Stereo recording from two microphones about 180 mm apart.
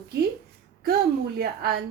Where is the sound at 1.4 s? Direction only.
60° right (ahead or behind).